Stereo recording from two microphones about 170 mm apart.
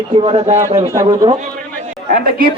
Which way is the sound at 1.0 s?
20° right (ahead or behind).